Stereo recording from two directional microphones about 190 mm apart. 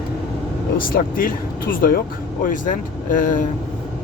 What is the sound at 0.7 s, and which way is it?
Speech, 50° left (ahead or behind).